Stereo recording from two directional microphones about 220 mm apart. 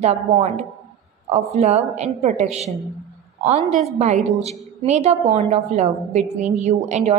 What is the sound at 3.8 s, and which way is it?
A woman's voice, 30° right (ahead or behind).